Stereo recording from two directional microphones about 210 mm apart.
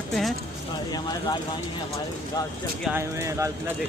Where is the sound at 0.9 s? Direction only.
20° left (ahead or behind).